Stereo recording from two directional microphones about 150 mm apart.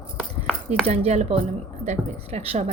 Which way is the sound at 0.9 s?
45° right (ahead or behind).